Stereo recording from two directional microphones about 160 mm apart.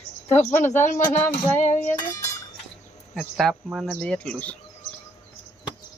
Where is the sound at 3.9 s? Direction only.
5° left (ahead or behind).